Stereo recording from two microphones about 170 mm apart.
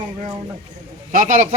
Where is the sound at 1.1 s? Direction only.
50° right (ahead or behind).